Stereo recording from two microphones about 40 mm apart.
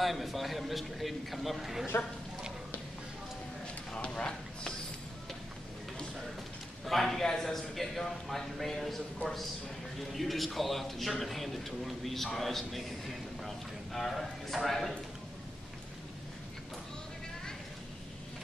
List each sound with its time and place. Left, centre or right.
0.0 s a man's voice: centre
3.9 s a sound: left
6.9 s a man's voice: centre
13.9 s a man's voice: centre